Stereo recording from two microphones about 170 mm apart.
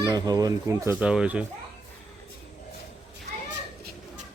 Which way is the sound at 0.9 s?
5° right (ahead or behind).